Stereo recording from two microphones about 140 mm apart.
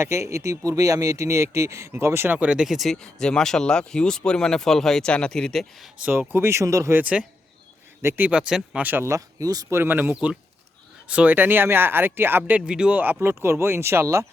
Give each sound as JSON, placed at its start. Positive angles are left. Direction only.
{"t": 0.0, "sound": "speech", "side_deg": -20}
{"t": 6.0, "sound": "speech", "side_deg": -15}